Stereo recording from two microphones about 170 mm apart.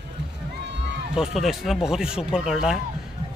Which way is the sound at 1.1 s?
Centre (ahead or behind).